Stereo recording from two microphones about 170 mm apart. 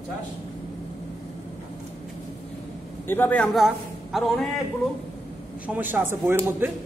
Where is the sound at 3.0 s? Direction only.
10° left (ahead or behind).